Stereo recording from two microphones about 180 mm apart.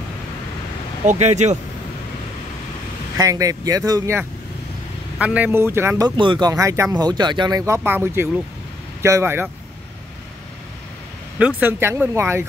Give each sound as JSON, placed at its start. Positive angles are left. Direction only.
{"t": 1.0, "sound": "speech", "side_deg": -40}
{"t": 3.2, "sound": "speech", "side_deg": -20}
{"t": 11.3, "sound": "speech", "side_deg": -10}